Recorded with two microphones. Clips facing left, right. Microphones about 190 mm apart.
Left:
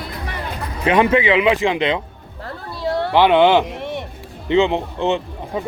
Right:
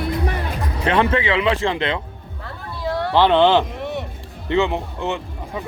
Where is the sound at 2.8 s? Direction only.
30° left (ahead or behind).